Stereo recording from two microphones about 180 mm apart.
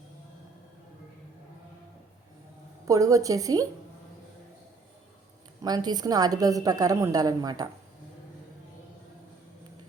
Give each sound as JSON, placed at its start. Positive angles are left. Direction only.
{"t": 2.8, "sound": "a woman's voice", "side_deg": -20}
{"t": 5.6, "sound": "a woman's voice", "side_deg": -20}